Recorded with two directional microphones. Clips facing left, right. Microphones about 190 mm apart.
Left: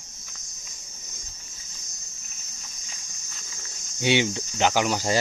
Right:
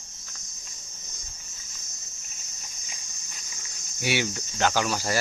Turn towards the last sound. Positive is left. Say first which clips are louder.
# left 3 dB
turn(degrees=20)  # may be behind; listen again after turning